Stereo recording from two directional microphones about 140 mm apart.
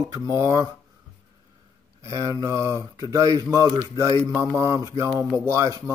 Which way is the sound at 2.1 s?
20° right (ahead or behind).